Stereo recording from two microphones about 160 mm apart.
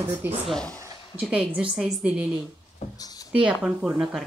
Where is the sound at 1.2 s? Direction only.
5° right (ahead or behind).